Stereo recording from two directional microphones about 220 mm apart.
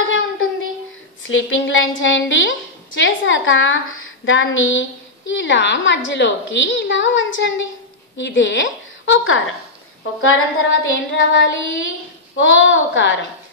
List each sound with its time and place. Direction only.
1.2 s a woman's voice: 65° left (ahead or behind)